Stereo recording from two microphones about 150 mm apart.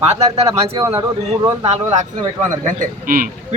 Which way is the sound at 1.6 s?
50° right (ahead or behind).